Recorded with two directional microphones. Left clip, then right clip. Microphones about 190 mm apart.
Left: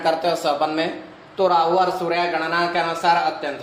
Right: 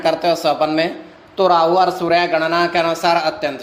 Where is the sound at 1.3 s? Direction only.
60° right (ahead or behind).